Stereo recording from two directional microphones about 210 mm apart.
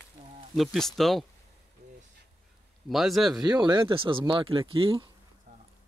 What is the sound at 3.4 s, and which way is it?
Speech, 20° right (ahead or behind).